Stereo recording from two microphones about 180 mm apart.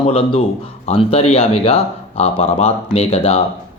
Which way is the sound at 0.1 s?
35° left (ahead or behind).